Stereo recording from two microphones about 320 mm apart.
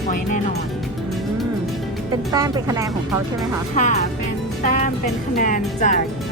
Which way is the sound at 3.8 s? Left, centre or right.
Left.